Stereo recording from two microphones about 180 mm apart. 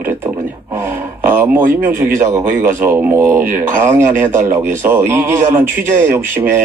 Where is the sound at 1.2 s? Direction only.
15° right (ahead or behind).